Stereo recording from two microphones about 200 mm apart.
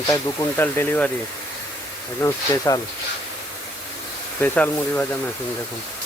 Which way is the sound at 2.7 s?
20° left (ahead or behind).